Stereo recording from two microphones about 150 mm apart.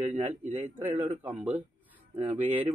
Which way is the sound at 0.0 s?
45° right (ahead or behind).